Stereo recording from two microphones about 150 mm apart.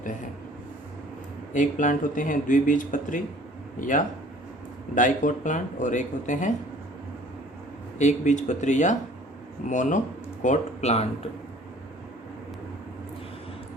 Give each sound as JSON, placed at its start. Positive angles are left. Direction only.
{"t": 1.5, "sound": "speech", "side_deg": 60}
{"t": 7.9, "sound": "speech", "side_deg": 50}